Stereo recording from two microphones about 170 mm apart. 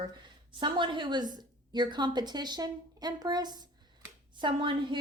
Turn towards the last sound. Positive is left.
turn(degrees=-30)  # may be behind; listen again after turning